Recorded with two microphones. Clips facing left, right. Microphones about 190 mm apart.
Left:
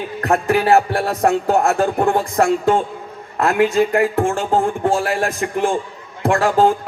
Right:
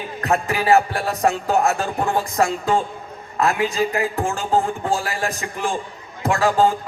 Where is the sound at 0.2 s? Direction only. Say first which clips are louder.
Left 5 dB; 55° left (ahead or behind).